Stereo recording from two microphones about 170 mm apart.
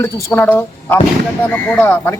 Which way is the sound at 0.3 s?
10° left (ahead or behind).